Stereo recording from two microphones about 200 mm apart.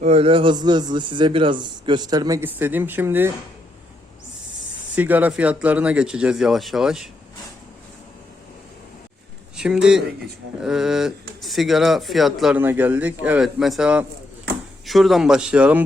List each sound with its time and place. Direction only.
0.0 s a man's voice: 30° right (ahead or behind); by 3.3 s 10° right (ahead or behind)
4.9 s speech: 10° right (ahead or behind)
9.6 s speech: 5° right (ahead or behind)